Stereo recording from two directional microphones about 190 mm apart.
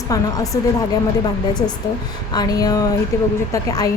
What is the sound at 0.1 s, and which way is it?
A woman's voice, 20° left (ahead or behind).